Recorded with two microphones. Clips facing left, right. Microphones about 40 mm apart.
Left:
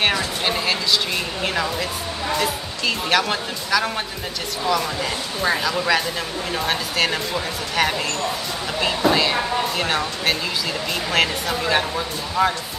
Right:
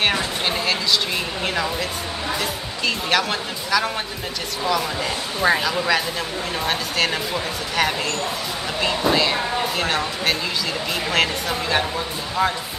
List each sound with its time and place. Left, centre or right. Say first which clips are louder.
0.5 s speech: even; centre
5.4 s speech: right 2 dB; centre